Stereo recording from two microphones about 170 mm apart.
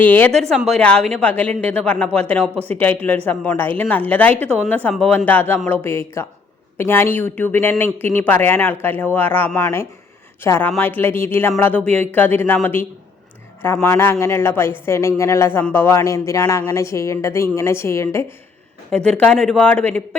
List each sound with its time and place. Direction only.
0.0 s speech: 10° left (ahead or behind)
13.8 s speech: 15° left (ahead or behind)
18.9 s speech: 5° left (ahead or behind)